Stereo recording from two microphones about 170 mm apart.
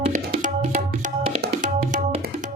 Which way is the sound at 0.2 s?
65° right (ahead or behind).